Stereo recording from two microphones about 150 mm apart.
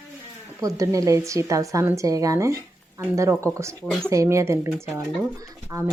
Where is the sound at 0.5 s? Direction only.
20° right (ahead or behind).